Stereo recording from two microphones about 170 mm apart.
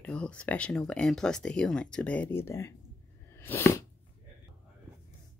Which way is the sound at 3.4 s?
15° left (ahead or behind).